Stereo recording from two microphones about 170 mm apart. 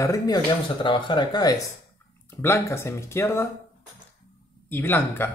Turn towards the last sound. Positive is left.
turn(degrees=10)  # may be behind; listen again after turning